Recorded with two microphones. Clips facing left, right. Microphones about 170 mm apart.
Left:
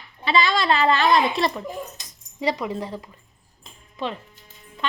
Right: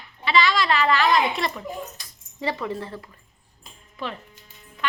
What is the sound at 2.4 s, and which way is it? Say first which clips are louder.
Speech: left 3 dB; 15° left (ahead or behind).